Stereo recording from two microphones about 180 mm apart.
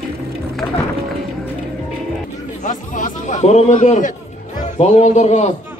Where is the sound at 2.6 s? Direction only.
45° left (ahead or behind).